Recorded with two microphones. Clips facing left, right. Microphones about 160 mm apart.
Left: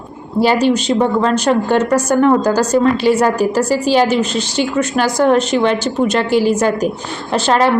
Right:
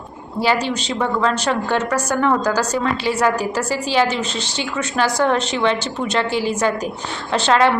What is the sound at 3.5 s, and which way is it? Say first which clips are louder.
Speech: left 7 dB; 40° left (ahead or behind).